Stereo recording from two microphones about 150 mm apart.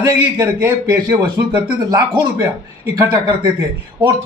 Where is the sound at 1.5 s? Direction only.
25° right (ahead or behind).